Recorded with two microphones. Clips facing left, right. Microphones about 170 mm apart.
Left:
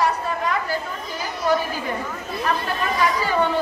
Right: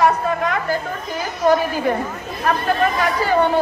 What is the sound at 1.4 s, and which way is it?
Chatter, 50° right (ahead or behind).